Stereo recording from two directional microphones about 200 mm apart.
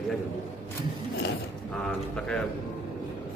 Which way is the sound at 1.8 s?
5° left (ahead or behind).